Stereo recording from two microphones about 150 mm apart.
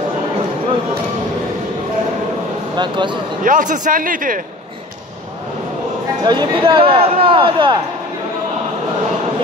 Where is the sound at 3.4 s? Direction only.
60° right (ahead or behind).